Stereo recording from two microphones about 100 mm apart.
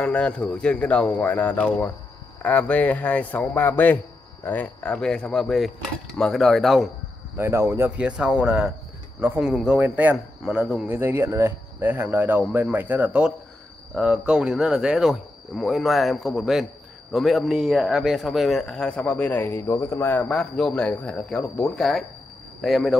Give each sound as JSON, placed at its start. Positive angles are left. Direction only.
{"t": 0.0, "sound": "speech", "side_deg": 10}
{"t": 7.3, "sound": "speech", "side_deg": -25}
{"t": 8.0, "sound": "speech", "side_deg": -10}
{"t": 10.9, "sound": "speech", "side_deg": -20}